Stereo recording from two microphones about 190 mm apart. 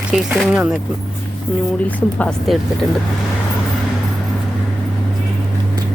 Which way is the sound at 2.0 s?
5° left (ahead or behind).